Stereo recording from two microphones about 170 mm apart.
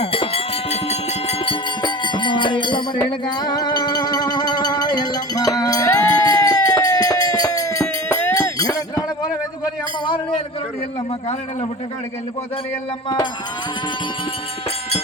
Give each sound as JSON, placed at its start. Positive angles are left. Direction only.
{"t": 0.0, "sound": "music", "side_deg": 35}